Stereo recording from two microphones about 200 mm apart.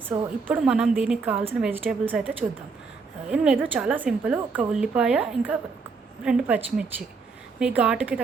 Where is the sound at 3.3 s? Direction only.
5° right (ahead or behind).